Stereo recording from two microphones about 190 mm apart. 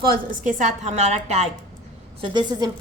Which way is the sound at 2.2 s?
25° right (ahead or behind).